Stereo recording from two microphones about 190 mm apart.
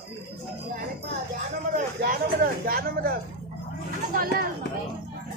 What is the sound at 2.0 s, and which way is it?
Speech, 50° right (ahead or behind).